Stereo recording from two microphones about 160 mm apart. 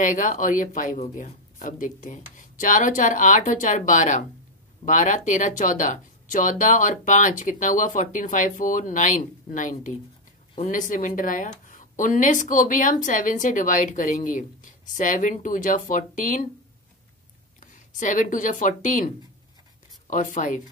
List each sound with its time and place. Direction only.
0.0 s speech: 55° left (ahead or behind)
17.6 s speech: 50° left (ahead or behind)
20.1 s speech: 55° left (ahead or behind)